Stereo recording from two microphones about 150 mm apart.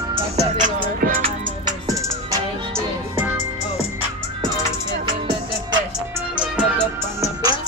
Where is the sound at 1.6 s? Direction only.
25° right (ahead or behind).